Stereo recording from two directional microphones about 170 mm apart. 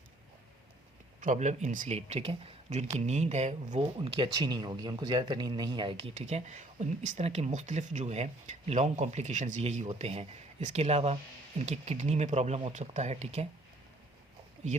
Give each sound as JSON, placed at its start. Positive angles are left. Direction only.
{"t": 1.2, "sound": "speech", "side_deg": -45}
{"t": 2.0, "sound": "speech", "side_deg": -35}